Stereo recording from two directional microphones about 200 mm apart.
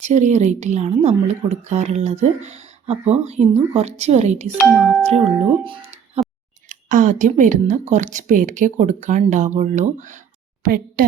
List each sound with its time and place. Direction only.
0.0 s speech: 35° right (ahead or behind)
4.5 s speech: centre (ahead or behind)
5.6 s speech: 25° right (ahead or behind)
6.7 s speech: 40° right (ahead or behind)